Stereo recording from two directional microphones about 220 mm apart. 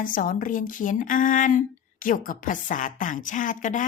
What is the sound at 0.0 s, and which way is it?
Speech, 40° left (ahead or behind).